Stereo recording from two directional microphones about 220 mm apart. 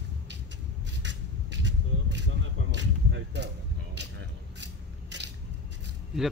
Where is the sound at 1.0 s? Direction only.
55° right (ahead or behind).